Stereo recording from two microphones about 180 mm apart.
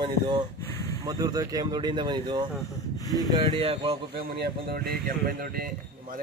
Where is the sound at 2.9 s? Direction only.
20° left (ahead or behind).